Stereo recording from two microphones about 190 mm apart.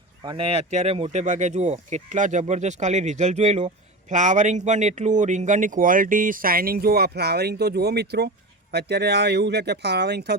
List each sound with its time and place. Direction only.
0.3 s speech: 30° right (ahead or behind); by 10.3 s 60° right (ahead or behind)